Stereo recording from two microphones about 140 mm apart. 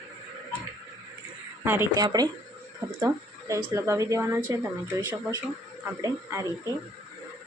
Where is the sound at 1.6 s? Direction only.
15° right (ahead or behind).